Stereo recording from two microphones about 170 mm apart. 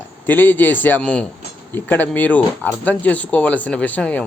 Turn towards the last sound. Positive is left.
turn(degrees=10)  # may be behind; listen again after turning